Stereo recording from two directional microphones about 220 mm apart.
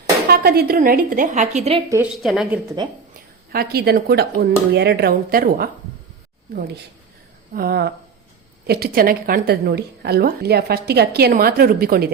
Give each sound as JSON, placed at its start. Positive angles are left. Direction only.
{"t": 0.3, "sound": "speech", "side_deg": -45}
{"t": 2.2, "sound": "a woman's voice", "side_deg": 0}
{"t": 3.5, "sound": "a woman's voice", "side_deg": -45}
{"t": 7.5, "sound": "a woman's voice", "side_deg": -45}